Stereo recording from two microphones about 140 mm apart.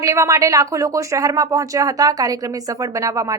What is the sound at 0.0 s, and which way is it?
Speech, 20° right (ahead or behind).